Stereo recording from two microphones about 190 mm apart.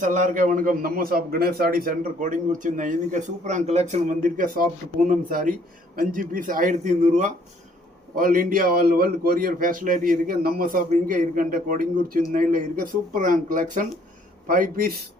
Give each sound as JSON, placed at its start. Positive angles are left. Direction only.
{"t": 0.0, "sound": "a man's voice", "side_deg": -40}